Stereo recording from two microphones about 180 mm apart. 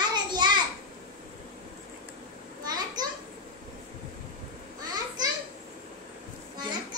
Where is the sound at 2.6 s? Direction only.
20° right (ahead or behind).